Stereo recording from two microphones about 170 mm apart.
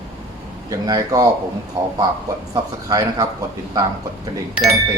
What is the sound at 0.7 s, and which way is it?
Speech, 20° right (ahead or behind).